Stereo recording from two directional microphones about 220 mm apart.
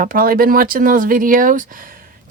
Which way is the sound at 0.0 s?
40° right (ahead or behind).